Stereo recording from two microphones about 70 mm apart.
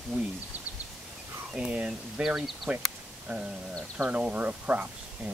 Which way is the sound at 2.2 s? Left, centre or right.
Centre.